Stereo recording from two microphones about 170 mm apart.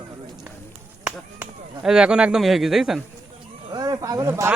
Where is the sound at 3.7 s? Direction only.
20° right (ahead or behind).